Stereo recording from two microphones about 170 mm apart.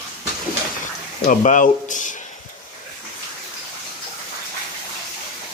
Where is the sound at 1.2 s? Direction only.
45° left (ahead or behind).